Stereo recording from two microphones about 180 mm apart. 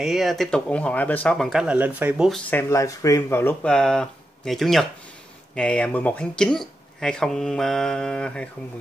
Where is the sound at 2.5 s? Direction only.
15° left (ahead or behind).